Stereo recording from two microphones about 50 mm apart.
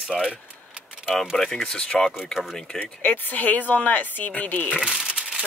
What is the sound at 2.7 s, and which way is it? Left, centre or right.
Speech, left.